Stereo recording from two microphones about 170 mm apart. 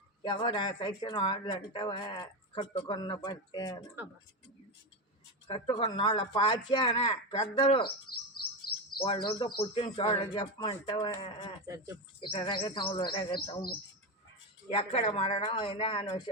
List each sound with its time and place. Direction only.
0.2 s speech: 30° left (ahead or behind)
5.9 s speech: 30° left (ahead or behind)
8.1 s chirp: 65° left (ahead or behind)
9.0 s speech: 30° left (ahead or behind)
14.7 s speech: 35° left (ahead or behind)